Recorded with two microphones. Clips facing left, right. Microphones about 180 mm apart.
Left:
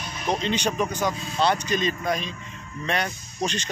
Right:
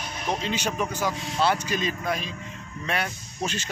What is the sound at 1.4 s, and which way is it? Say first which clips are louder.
Speech: left 2 dB; 5° right (ahead or behind).